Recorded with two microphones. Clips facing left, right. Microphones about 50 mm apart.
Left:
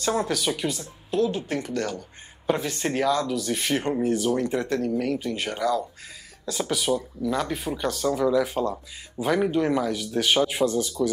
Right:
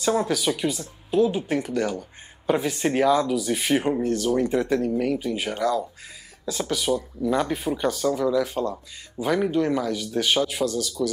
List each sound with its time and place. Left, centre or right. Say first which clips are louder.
0.2 s speech: right 2 dB; centre
4.0 s speech: left 1 dB; centre
4.4 s speech: right 3 dB; centre
8.1 s speech: left 3 dB; centre
10.4 s speech: left 2 dB; left